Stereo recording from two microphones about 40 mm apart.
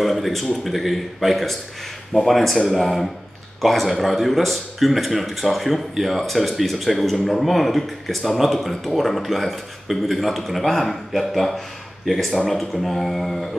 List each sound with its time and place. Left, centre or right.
0.0 s speech: centre